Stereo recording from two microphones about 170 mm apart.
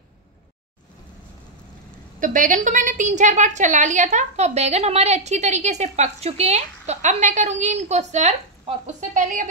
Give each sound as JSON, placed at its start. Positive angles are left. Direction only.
{"t": 2.1, "sound": "a woman's voice", "side_deg": -50}